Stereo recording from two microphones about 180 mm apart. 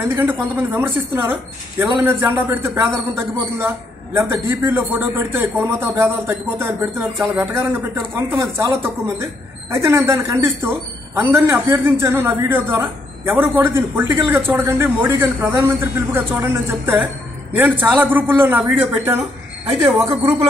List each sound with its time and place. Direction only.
0.1 s speech: 10° right (ahead or behind)